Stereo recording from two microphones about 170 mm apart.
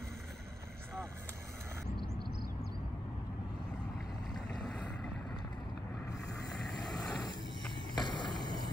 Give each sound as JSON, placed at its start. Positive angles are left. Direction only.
{"t": 4.4, "sound": "boat", "side_deg": 0}
{"t": 6.6, "sound": "vehicle", "side_deg": 0}
{"t": 7.9, "sound": "a sound", "side_deg": 25}